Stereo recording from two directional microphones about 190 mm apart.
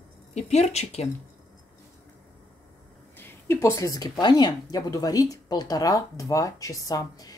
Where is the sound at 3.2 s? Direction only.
15° left (ahead or behind).